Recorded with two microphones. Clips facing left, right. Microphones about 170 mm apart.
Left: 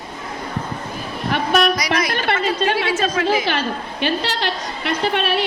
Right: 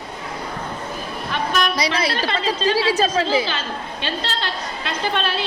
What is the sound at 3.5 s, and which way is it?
A woman's voice, 65° left (ahead or behind).